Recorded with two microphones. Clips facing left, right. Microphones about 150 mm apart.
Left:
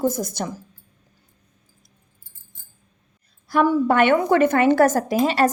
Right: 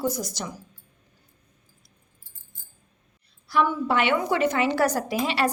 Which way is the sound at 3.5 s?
45° left (ahead or behind).